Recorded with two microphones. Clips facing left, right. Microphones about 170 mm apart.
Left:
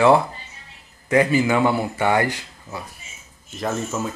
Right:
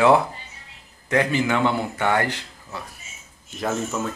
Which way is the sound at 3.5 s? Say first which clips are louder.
Even; centre (ahead or behind).